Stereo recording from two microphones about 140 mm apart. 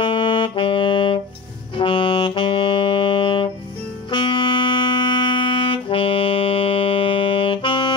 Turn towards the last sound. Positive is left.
turn(degrees=35)  # may be behind; listen again after turning